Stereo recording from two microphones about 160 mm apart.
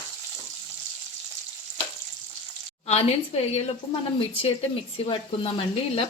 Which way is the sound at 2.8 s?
40° left (ahead or behind).